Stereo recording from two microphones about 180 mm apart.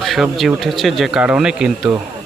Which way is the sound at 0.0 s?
Centre (ahead or behind).